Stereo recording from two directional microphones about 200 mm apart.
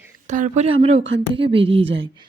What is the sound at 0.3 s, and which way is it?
Speech, 35° right (ahead or behind).